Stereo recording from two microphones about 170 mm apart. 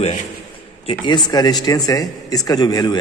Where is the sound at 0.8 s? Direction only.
25° left (ahead or behind).